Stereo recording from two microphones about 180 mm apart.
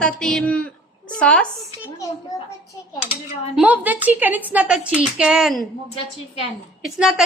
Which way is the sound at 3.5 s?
10° right (ahead or behind).